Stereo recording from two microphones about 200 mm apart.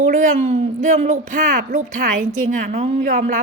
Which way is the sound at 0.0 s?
40° right (ahead or behind).